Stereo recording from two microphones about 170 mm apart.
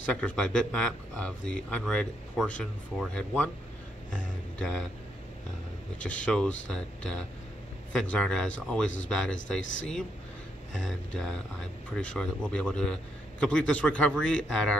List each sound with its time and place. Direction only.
0.0 s speech: 5° left (ahead or behind)
5.9 s speech: 5° left (ahead or behind)
9.6 s speech: 90° left
11.1 s speech: 5° left (ahead or behind)